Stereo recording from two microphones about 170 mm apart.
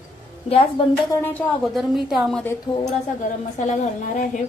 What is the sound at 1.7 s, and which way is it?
Speech, centre (ahead or behind).